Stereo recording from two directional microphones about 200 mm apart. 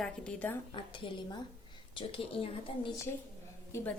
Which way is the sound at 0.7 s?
25° left (ahead or behind).